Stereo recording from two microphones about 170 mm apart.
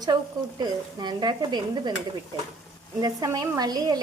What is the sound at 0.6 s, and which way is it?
Speech, 25° right (ahead or behind).